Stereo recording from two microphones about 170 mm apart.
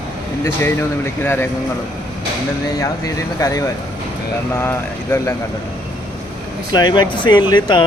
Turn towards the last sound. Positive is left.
turn(degrees=25)  # may be behind; listen again after turning